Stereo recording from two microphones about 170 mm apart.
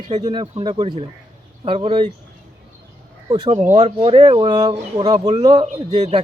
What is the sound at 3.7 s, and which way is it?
Speech, 35° right (ahead or behind).